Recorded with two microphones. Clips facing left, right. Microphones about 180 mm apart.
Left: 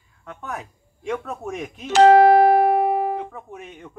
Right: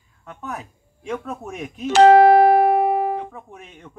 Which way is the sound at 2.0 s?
60° right (ahead or behind).